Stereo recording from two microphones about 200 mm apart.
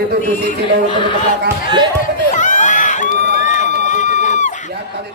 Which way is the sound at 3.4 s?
40° left (ahead or behind).